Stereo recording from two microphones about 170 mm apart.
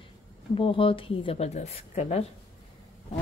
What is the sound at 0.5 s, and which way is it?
Speech, 30° left (ahead or behind).